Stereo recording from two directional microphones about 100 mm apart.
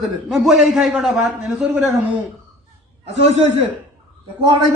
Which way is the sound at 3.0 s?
90° right.